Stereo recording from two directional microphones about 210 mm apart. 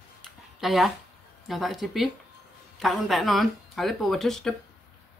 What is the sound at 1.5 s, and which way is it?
Speech, centre (ahead or behind).